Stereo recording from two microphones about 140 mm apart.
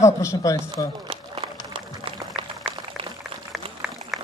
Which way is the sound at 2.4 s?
40° right (ahead or behind).